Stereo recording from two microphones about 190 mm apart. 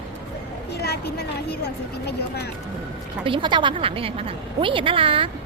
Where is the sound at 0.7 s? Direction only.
60° left (ahead or behind).